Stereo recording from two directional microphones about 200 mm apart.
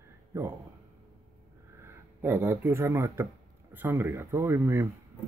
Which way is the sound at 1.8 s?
10° right (ahead or behind).